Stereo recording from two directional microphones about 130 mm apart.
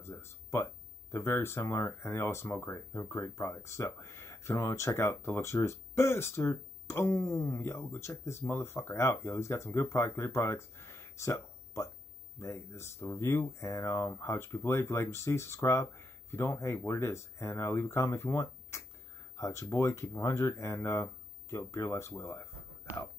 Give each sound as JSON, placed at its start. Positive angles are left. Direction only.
{"t": 0.0, "sound": "speech", "side_deg": 20}